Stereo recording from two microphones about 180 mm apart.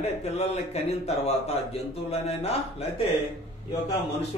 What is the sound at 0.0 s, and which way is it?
A man's voice, 35° left (ahead or behind).